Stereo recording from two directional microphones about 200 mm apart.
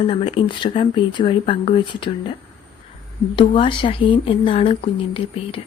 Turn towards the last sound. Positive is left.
turn(degrees=25)  # may be behind; listen again after turning